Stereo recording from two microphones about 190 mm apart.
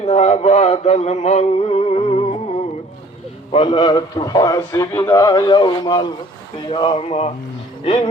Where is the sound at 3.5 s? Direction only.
30° left (ahead or behind).